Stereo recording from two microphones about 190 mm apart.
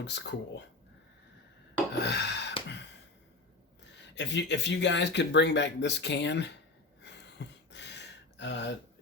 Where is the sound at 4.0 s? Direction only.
65° left (ahead or behind).